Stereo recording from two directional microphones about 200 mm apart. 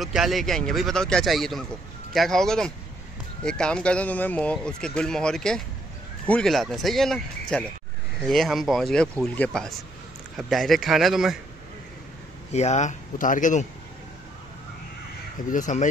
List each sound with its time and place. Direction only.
0.0 s speech: centre (ahead or behind)
12.5 s speech: 35° left (ahead or behind)
15.5 s speech: 40° left (ahead or behind)